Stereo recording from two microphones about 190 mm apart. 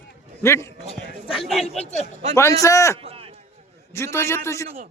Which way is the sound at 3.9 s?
15° left (ahead or behind).